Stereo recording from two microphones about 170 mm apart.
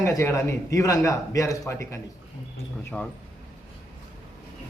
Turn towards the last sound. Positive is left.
turn(degrees=10)  # may be behind; listen again after turning